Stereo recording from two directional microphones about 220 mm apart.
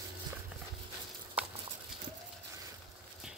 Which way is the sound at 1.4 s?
5° right (ahead or behind).